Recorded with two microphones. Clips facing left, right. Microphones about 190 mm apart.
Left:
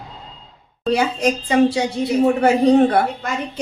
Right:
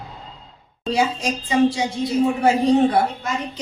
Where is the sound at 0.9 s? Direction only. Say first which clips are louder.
Left 3 dB; 60° left (ahead or behind).